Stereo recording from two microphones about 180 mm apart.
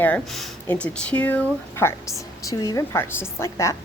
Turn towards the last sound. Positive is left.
turn(degrees=15)  # may be behind; listen again after turning